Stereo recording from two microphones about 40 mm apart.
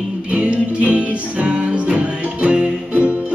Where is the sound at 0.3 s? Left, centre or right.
Right.